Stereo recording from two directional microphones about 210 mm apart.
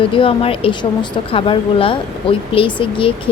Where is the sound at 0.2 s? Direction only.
25° left (ahead or behind).